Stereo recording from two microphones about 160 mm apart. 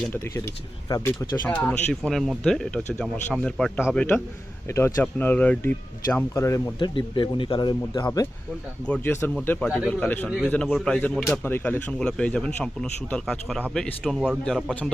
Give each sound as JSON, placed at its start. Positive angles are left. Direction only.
{"t": 0.9, "sound": "speech", "side_deg": 20}
{"t": 1.5, "sound": "speech", "side_deg": 10}
{"t": 8.9, "sound": "speech", "side_deg": 10}
{"t": 11.4, "sound": "speech", "side_deg": 15}